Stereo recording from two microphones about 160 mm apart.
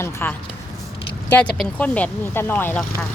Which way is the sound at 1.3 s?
5° left (ahead or behind).